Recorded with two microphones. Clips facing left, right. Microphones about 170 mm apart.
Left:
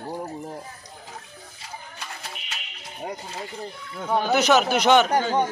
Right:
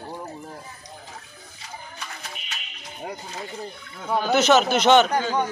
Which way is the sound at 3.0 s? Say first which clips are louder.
Left 1 dB; 5° left (ahead or behind).